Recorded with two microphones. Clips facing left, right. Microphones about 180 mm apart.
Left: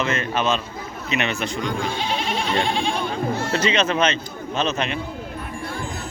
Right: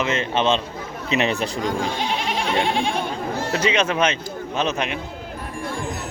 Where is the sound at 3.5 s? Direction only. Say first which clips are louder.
Right 1 dB; 10° right (ahead or behind).